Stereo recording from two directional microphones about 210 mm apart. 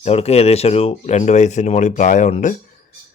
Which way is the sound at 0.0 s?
30° left (ahead or behind).